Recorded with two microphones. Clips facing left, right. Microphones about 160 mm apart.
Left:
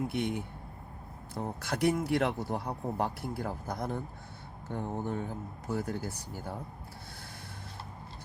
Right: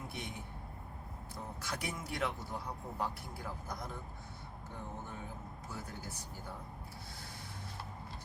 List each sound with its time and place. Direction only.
0.1 s speech: 70° left (ahead or behind)